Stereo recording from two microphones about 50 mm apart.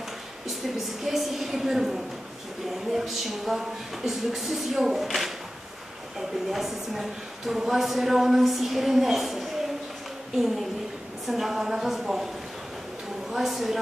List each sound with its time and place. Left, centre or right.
0.7 s a woman's voice: centre
13.3 s speech: centre